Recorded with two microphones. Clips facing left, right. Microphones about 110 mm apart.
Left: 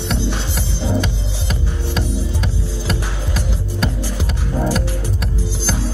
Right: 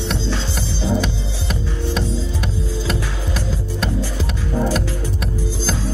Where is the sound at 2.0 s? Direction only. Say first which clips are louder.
Left 3 dB; 15° left (ahead or behind).